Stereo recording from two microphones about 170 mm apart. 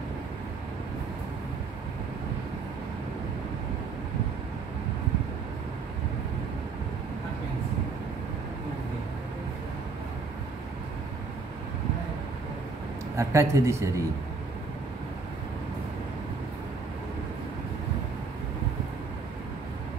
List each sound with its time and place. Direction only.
13.1 s speech: 15° right (ahead or behind)